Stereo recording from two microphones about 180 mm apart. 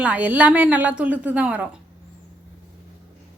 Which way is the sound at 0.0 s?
10° right (ahead or behind).